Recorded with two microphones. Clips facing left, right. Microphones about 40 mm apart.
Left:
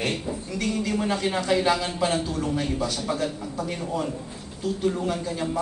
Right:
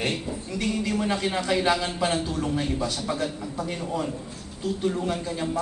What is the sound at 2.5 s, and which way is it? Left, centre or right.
A man's voice, centre.